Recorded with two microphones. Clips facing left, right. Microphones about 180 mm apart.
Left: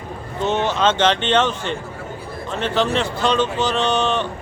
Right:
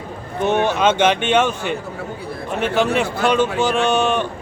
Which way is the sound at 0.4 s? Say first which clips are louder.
Right 2 dB; 15° right (ahead or behind).